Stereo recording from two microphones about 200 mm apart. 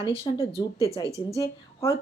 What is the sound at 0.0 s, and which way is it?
Speech, 25° left (ahead or behind).